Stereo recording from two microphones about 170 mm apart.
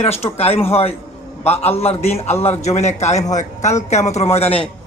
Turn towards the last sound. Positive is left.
turn(degrees=35)  # may be behind; listen again after turning